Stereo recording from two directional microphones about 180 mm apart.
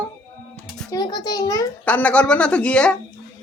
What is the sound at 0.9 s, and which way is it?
Speech, 25° left (ahead or behind).